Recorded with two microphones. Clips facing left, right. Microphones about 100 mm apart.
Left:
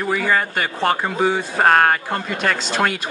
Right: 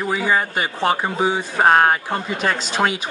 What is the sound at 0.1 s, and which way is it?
Speech, 15° right (ahead or behind).